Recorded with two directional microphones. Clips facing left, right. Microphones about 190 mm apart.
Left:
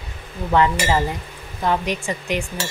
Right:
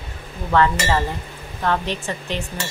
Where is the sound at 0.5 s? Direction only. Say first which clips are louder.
Even; 15° left (ahead or behind).